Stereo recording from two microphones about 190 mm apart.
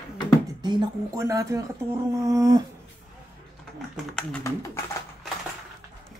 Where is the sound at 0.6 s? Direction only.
25° right (ahead or behind).